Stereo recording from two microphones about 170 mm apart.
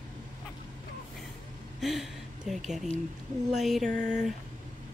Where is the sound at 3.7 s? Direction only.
Centre (ahead or behind).